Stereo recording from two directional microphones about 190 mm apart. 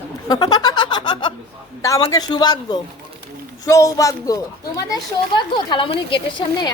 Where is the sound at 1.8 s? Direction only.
20° left (ahead or behind).